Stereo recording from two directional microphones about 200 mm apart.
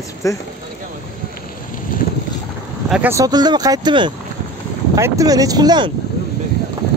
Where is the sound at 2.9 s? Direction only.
10° right (ahead or behind).